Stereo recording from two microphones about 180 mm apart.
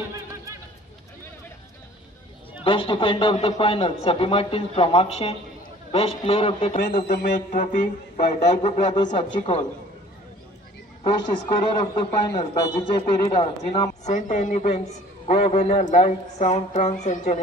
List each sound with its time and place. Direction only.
2.6 s a man's voice: 30° left (ahead or behind)
6.9 s music: 55° left (ahead or behind)
8.9 s a man's voice: 25° left (ahead or behind)
11.5 s a man's voice: 25° left (ahead or behind)
14.0 s a man's voice: 45° left (ahead or behind)